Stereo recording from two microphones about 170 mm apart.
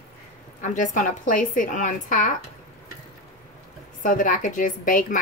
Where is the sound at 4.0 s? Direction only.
50° left (ahead or behind).